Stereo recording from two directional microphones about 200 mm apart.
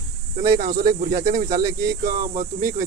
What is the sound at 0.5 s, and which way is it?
Speech, 45° right (ahead or behind).